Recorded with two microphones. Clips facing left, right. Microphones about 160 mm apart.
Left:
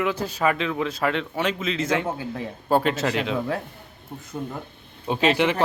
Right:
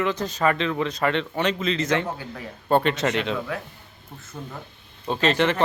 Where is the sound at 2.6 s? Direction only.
5° left (ahead or behind).